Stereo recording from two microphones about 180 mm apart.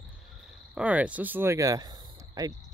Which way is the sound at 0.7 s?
5° right (ahead or behind).